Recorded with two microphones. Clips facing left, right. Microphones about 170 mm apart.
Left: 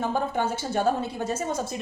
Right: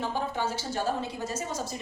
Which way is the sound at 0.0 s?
55° left (ahead or behind).